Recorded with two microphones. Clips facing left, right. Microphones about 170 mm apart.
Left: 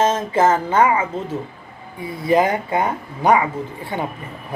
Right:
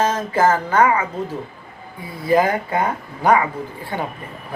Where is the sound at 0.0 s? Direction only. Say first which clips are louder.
Left 1 dB; 25° left (ahead or behind).